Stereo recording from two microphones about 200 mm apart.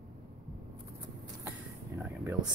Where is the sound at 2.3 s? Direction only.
20° right (ahead or behind).